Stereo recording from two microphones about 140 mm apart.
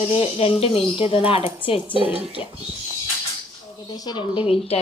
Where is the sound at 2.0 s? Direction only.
10° right (ahead or behind).